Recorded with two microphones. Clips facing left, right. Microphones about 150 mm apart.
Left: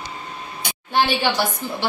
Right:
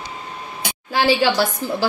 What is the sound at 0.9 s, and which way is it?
Speech, 90° right.